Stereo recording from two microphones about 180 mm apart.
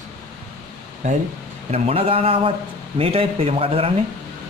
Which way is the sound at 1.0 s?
45° right (ahead or behind).